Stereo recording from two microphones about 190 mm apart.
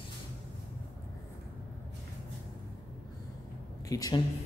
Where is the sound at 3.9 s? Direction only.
20° left (ahead or behind).